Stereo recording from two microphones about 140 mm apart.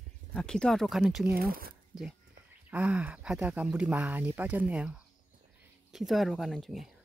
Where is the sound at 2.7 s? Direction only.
10° right (ahead or behind).